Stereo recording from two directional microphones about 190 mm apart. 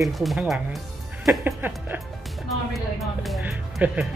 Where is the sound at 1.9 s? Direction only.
10° right (ahead or behind).